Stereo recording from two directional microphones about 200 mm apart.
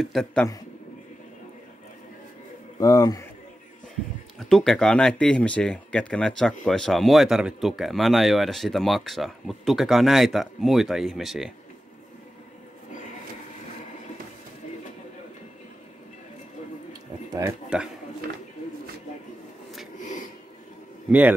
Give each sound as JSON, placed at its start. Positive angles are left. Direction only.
{"t": 0.0, "sound": "speech", "side_deg": 0}
{"t": 2.8, "sound": "a man's voice", "side_deg": 15}
{"t": 4.4, "sound": "speech", "side_deg": 0}
{"t": 17.3, "sound": "speech", "side_deg": -20}
{"t": 20.0, "sound": "a sound", "side_deg": 40}